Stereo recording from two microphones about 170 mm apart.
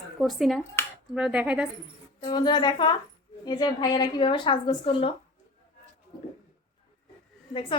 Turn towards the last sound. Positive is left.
turn(degrees=30)  # may be behind; listen again after turning